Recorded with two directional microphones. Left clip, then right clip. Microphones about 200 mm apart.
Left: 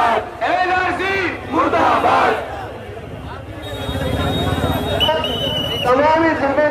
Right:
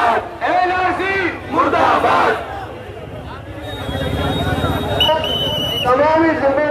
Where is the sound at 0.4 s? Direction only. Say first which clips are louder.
Right 1 dB; 25° left (ahead or behind).